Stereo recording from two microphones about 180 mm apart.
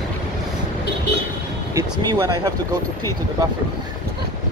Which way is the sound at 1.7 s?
20° right (ahead or behind).